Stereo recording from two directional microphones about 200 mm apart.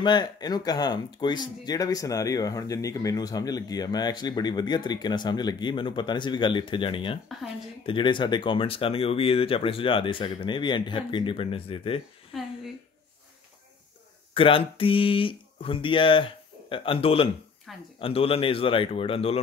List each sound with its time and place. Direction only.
0.0 s speech: 20° left (ahead or behind)
12.3 s a sound: centre (ahead or behind)
14.3 s speech: 25° left (ahead or behind)